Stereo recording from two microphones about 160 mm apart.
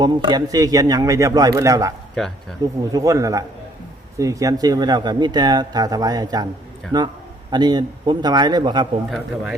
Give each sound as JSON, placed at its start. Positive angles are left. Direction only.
{"t": 0.0, "sound": "speech", "side_deg": -25}
{"t": 2.1, "sound": "a man's voice", "side_deg": 5}
{"t": 2.9, "sound": "speech", "side_deg": -20}
{"t": 9.0, "sound": "a man's voice", "side_deg": 0}